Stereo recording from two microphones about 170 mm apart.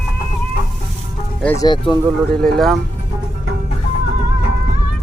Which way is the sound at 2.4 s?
Centre (ahead or behind).